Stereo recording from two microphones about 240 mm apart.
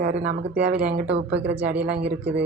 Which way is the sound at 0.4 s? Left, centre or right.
Right.